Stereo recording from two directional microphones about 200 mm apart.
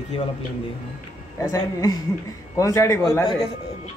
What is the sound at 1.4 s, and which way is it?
Speech, 20° left (ahead or behind).